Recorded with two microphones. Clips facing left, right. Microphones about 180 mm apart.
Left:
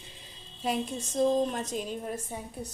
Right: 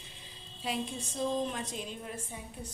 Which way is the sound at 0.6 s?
45° left (ahead or behind).